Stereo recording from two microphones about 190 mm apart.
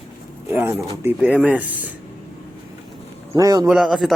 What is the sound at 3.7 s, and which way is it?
Speech, centre (ahead or behind).